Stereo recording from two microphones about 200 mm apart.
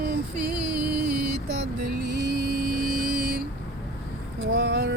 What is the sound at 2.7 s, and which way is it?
Vehicle, 45° right (ahead or behind).